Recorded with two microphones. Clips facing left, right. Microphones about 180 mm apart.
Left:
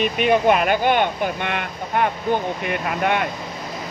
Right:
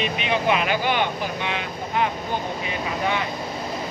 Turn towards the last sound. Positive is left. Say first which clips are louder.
# left 3 dB
turn(degrees=60)  # may be behind; listen again after turning